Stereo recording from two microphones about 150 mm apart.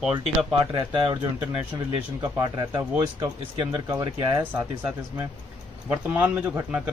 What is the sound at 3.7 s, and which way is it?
Speech, 30° right (ahead or behind).